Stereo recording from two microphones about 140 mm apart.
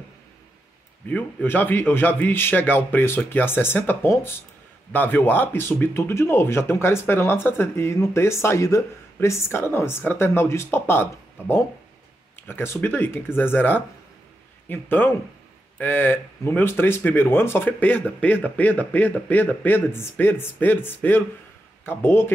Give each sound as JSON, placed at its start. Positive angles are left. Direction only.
{"t": 1.0, "sound": "speech", "side_deg": 10}